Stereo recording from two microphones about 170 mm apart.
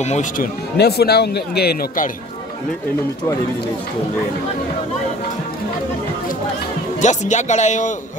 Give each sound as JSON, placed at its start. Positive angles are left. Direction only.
{"t": 0.0, "sound": "speech", "side_deg": 40}
{"t": 0.4, "sound": "speech", "side_deg": 70}
{"t": 7.0, "sound": "a man's voice", "side_deg": 45}